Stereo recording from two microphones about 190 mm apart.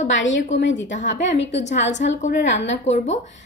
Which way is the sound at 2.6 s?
40° left (ahead or behind).